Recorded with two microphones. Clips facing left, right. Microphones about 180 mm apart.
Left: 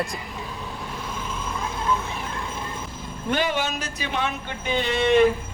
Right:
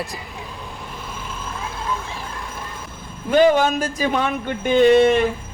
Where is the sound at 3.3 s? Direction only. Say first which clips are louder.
Right 10 dB; 45° right (ahead or behind).